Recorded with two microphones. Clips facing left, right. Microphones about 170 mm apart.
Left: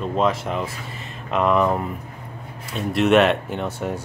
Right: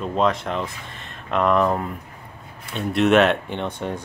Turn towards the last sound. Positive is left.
turn(degrees=5)  # may be behind; listen again after turning